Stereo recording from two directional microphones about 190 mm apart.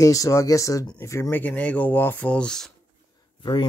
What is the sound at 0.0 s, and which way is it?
Speech, 20° left (ahead or behind).